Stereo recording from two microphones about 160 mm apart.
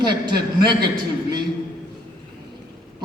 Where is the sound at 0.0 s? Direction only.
25° right (ahead or behind).